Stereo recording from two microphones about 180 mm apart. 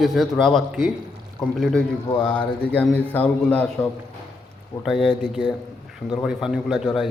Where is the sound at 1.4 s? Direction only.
15° left (ahead or behind).